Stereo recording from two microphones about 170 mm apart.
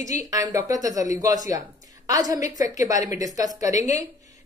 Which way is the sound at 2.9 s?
20° right (ahead or behind).